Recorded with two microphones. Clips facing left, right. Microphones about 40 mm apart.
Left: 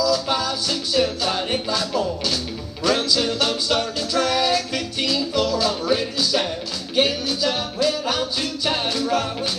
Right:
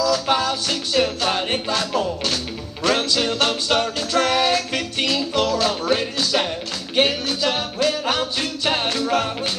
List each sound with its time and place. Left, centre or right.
0.0 s music: right